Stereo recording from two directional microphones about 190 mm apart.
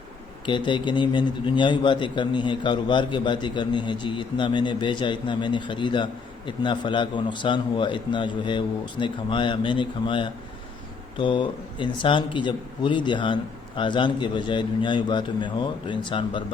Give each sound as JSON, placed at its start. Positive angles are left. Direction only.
{"t": 0.4, "sound": "a man's voice", "side_deg": 25}